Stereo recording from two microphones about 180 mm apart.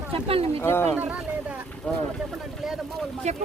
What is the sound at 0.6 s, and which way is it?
Speech, 15° left (ahead or behind).